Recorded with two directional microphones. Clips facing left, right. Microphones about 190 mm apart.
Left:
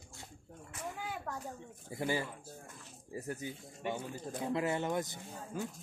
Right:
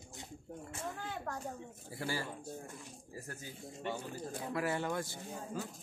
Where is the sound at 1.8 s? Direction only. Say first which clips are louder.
Left 4 dB; 20° left (ahead or behind).